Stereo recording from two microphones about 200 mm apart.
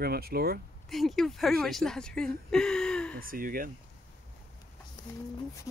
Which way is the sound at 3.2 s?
45° right (ahead or behind).